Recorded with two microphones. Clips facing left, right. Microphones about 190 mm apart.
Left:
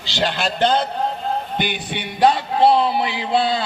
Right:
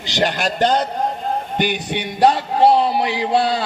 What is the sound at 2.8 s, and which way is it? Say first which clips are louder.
Speech: right 2 dB; 40° right (ahead or behind).